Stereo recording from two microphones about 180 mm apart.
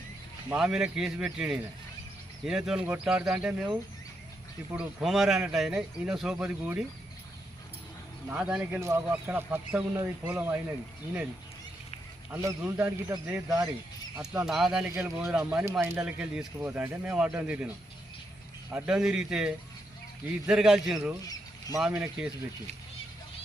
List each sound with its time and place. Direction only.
0.5 s speech: 5° right (ahead or behind)
8.3 s speech: 5° right (ahead or behind)
12.3 s speech: 15° right (ahead or behind)
14.9 s speech: 15° right (ahead or behind)
18.7 s speech: 5° right (ahead or behind)